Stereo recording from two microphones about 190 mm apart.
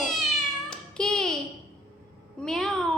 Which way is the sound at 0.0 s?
5° left (ahead or behind).